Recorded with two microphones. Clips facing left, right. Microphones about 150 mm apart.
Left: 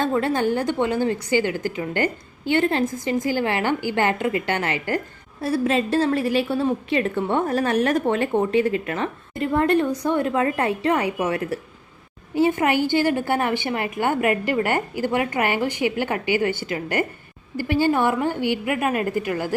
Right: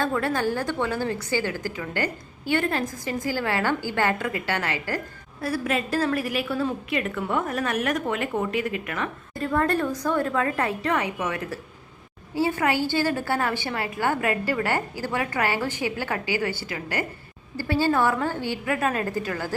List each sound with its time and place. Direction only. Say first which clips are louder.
0.0 s a woman's voice: left 3 dB; 20° left (ahead or behind)